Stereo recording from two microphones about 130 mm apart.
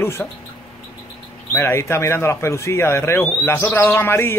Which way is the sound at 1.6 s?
20° left (ahead or behind).